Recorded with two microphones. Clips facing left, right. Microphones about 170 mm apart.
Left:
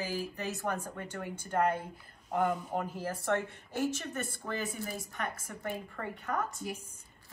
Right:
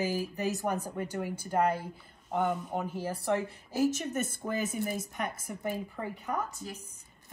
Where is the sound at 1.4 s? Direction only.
5° right (ahead or behind).